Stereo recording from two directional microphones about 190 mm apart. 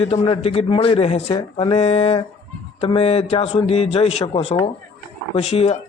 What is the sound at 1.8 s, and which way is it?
A man's voice, 35° left (ahead or behind).